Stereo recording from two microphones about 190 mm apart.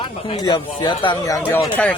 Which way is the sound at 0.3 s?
25° left (ahead or behind).